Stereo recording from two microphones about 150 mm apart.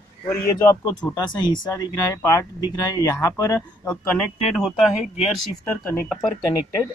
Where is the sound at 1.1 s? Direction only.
30° left (ahead or behind).